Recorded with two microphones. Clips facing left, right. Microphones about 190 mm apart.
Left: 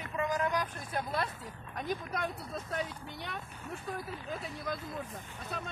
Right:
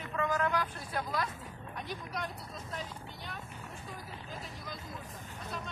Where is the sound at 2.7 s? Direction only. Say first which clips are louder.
Left 5 dB; 65° left (ahead or behind).